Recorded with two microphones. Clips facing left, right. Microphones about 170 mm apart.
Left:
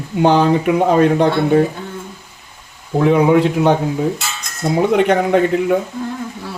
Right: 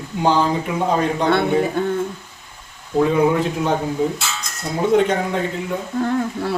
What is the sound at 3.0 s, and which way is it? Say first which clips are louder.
Speech: left 3 dB; 70° left (ahead or behind).